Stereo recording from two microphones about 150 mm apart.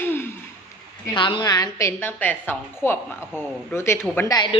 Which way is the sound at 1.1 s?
30° left (ahead or behind).